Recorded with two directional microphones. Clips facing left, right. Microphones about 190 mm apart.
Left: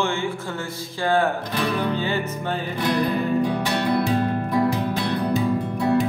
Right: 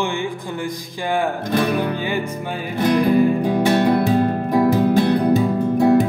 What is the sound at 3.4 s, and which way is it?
Music, 45° right (ahead or behind).